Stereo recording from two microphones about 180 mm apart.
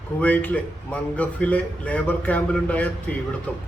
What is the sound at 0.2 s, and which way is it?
A man's voice, 10° left (ahead or behind).